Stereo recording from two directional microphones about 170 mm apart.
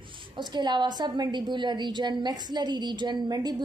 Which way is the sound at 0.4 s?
25° right (ahead or behind).